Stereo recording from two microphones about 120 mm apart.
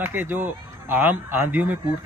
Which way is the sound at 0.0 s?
15° right (ahead or behind).